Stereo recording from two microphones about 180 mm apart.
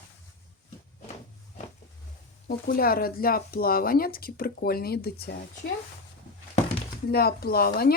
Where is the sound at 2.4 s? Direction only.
55° left (ahead or behind).